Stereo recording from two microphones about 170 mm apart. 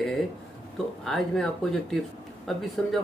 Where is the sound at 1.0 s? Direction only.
Centre (ahead or behind).